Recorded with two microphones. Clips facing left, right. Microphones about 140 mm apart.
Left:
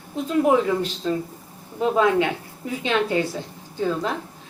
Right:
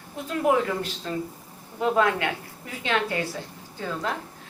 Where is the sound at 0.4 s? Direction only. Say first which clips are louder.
Left 1 dB; 20° left (ahead or behind).